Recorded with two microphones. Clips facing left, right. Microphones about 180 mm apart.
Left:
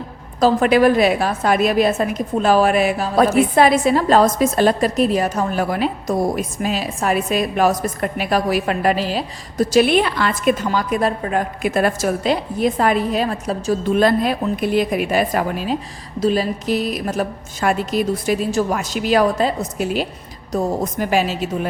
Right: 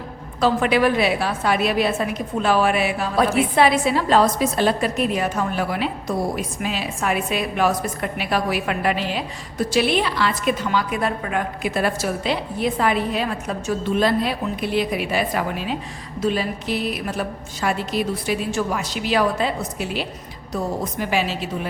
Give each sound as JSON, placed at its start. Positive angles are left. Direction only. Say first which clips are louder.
{"t": 0.3, "sound": "a woman's voice", "louder": "left 4 dB", "side_deg": 40}
{"t": 11.6, "sound": "a woman's voice", "louder": "left 5 dB", "side_deg": 45}
{"t": 13.9, "sound": "a woman's voice", "louder": "left 4 dB", "side_deg": 50}